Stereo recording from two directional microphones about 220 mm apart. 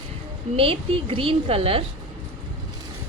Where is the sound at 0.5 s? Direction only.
25° right (ahead or behind).